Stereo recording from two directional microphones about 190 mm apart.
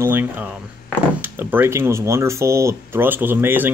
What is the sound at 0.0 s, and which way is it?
Speech, 10° right (ahead or behind).